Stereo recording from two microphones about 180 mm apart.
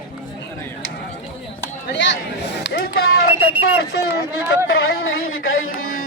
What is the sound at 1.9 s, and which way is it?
Speech, 75° left (ahead or behind).